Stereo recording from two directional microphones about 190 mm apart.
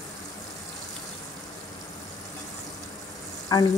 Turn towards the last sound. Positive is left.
turn(degrees=20)  # may be behind; listen again after turning